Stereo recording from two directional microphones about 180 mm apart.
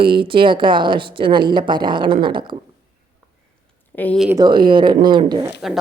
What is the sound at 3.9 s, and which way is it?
Speech, 10° left (ahead or behind).